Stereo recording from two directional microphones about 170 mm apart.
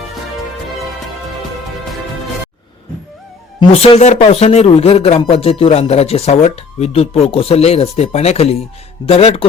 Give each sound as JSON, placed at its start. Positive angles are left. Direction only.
{"t": 3.7, "sound": "speech", "side_deg": 40}